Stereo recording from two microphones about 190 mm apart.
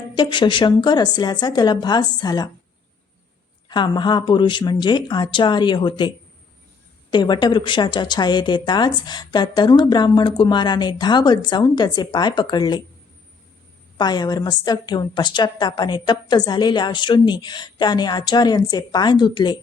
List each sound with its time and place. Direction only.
0.2 s a woman's voice: 25° left (ahead or behind)
3.7 s a woman's voice: 25° left (ahead or behind)
14.0 s a woman's voice: 20° left (ahead or behind)